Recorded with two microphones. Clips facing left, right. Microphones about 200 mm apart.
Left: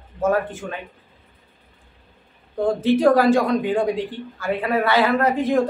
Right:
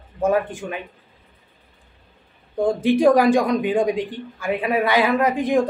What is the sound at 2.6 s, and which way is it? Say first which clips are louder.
Speech: right 1 dB; 15° right (ahead or behind).